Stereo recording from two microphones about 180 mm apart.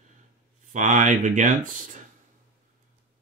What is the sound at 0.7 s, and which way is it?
Speech, 45° right (ahead or behind).